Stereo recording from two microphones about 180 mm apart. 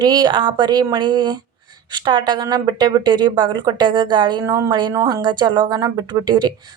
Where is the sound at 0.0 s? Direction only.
25° right (ahead or behind).